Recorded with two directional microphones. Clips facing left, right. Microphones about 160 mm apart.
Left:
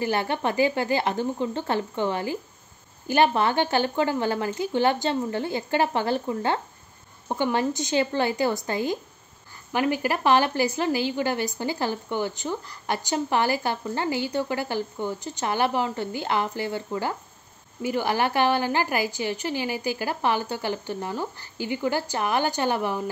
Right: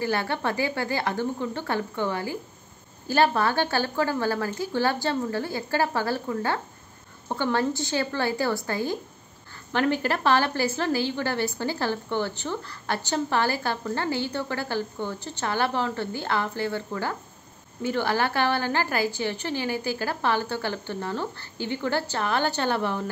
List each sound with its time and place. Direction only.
0.0 s a woman's voice: 20° left (ahead or behind)